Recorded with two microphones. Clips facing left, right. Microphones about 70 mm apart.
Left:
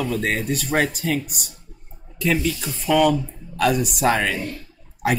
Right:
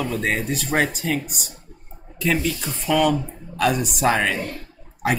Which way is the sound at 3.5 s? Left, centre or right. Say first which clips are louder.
Left 1 dB; centre.